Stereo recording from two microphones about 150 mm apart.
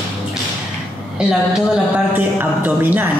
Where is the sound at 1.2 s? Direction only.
5° right (ahead or behind).